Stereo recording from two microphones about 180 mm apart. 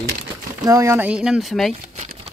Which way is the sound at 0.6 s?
15° right (ahead or behind).